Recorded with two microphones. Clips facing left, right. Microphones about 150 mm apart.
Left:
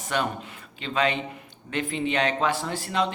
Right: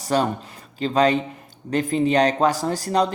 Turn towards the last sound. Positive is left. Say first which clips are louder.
# right 6 dB
turn(degrees=-40)  # may be behind; listen again after turning